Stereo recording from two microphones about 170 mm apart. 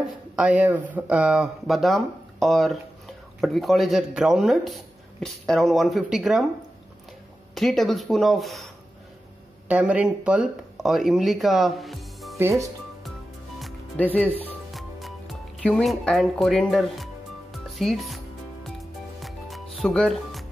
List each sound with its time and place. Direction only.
0.0 s speech: 5° right (ahead or behind)
7.5 s speech: centre (ahead or behind)
9.7 s speech: 10° right (ahead or behind)
12.4 s speech: 15° right (ahead or behind)
13.6 s music: centre (ahead or behind)